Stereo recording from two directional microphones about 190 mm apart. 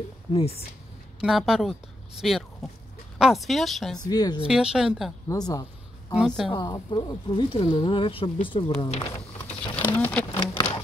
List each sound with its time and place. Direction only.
0.3 s speech: 30° left (ahead or behind)
1.2 s a woman's voice: centre (ahead or behind)
4.1 s speech: 20° left (ahead or behind)
4.5 s a woman's voice: 5° right (ahead or behind)
5.3 s a sound: 20° left (ahead or behind)
6.1 s a woman's voice: centre (ahead or behind)
6.5 s speech: 20° left (ahead or behind)
9.6 s patter: 10° left (ahead or behind)
10.3 s insect: 20° left (ahead or behind)